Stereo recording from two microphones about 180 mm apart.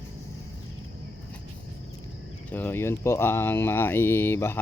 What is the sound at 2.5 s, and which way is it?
Speech, 10° left (ahead or behind).